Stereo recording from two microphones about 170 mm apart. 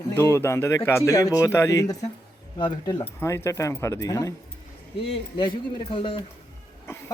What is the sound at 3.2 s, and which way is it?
Speech, 15° left (ahead or behind).